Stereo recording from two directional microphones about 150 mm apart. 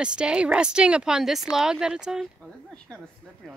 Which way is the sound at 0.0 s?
5° right (ahead or behind).